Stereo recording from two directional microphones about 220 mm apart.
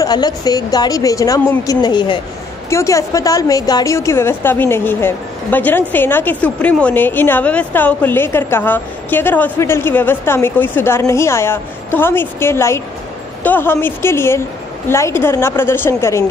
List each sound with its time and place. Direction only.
0.0 s a woman's voice: 15° left (ahead or behind)